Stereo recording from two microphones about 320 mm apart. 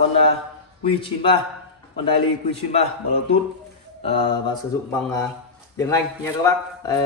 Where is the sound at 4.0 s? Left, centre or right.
Centre.